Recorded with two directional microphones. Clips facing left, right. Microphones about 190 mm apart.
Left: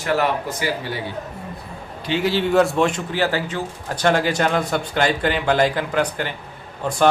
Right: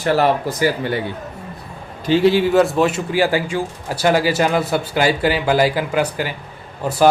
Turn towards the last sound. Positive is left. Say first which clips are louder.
# right 2 dB
turn(degrees=-5)  # may be behind; listen again after turning